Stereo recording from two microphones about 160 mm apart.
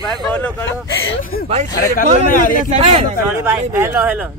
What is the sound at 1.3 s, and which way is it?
Speech, 70° left (ahead or behind).